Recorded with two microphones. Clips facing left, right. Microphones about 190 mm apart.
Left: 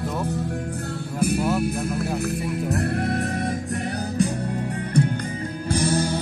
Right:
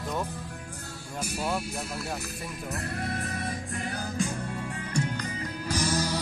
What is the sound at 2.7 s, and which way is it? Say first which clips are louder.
Music: left 9 dB; 65° left (ahead or behind).